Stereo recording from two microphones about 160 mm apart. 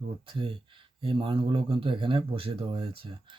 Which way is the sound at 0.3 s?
35° right (ahead or behind).